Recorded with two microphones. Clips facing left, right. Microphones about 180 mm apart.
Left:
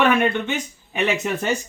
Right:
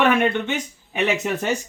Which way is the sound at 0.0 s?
20° right (ahead or behind).